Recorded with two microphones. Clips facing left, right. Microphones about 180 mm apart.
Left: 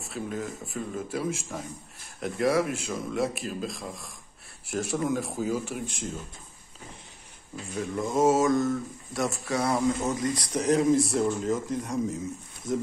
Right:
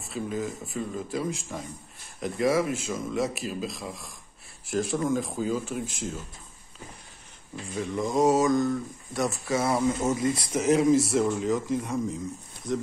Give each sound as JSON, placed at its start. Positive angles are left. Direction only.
{"t": 0.0, "sound": "speech", "side_deg": 0}
{"t": 7.9, "sound": "speech", "side_deg": 0}